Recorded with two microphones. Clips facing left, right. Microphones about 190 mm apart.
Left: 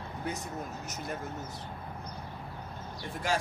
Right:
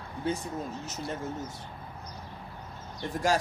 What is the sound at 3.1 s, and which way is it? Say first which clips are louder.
Speech: right 5 dB; 45° right (ahead or behind).